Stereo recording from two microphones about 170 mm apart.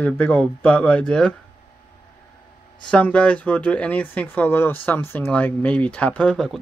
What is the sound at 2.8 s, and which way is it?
Speech, 10° left (ahead or behind).